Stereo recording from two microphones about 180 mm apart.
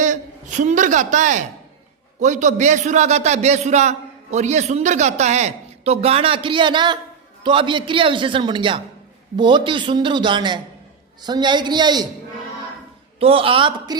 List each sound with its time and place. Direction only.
0.0 s a man's voice: 45° right (ahead or behind); by 12.0 s 25° right (ahead or behind)
13.1 s speech: 30° right (ahead or behind)